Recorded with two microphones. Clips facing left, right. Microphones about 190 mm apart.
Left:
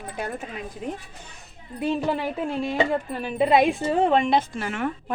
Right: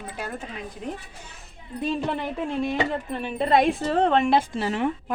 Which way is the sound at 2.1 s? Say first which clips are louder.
Left 2 dB; 5° left (ahead or behind).